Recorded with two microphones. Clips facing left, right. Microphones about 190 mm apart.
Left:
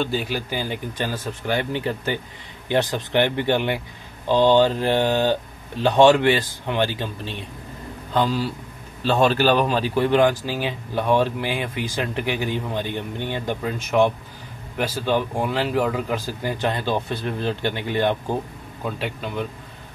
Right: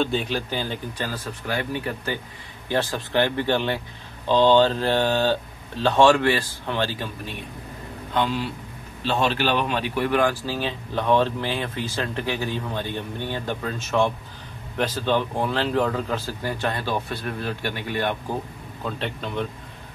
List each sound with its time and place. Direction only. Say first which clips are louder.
0.0 s speech: even; 5° left (ahead or behind)
0.9 s speech: left 3 dB; 20° left (ahead or behind)
8.1 s a man's voice: left 3 dB; 35° left (ahead or behind)
18.9 s speech: left 1 dB; 10° left (ahead or behind)